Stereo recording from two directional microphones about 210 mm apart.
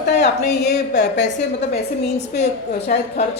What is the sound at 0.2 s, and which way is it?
A woman's voice, 50° left (ahead or behind).